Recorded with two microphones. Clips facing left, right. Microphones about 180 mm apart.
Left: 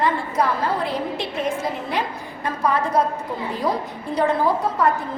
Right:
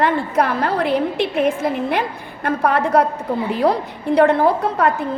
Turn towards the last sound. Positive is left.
turn(degrees=-65)  # may be behind; listen again after turning